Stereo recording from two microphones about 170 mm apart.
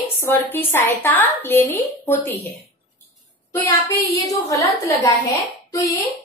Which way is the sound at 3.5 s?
15° left (ahead or behind).